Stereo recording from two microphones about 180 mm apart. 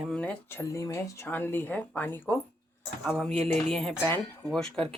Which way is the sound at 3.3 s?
35° right (ahead or behind).